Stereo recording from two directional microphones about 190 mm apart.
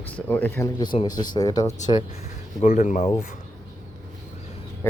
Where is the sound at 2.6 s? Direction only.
40° left (ahead or behind).